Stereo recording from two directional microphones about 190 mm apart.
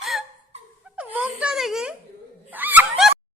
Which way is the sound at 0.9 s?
5° right (ahead or behind).